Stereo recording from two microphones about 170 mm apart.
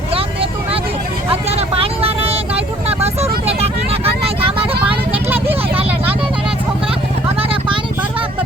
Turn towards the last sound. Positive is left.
turn(degrees=-30)  # may be behind; listen again after turning